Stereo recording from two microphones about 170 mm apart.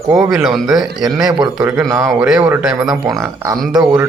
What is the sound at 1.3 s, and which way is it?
Speech, 25° right (ahead or behind).